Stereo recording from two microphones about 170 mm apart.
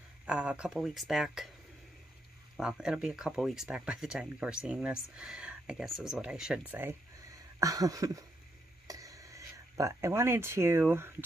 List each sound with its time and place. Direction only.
0.3 s speech: 5° right (ahead or behind)
2.5 s speech: 5° right (ahead or behind)
7.6 s a sound: 20° right (ahead or behind)
8.8 s speech: 20° right (ahead or behind)